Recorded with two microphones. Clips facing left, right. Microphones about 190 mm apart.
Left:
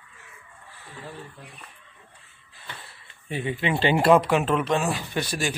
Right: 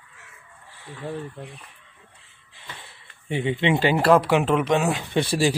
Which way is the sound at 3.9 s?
Centre (ahead or behind).